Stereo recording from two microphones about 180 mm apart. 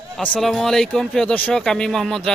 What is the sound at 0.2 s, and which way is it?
Speech, centre (ahead or behind).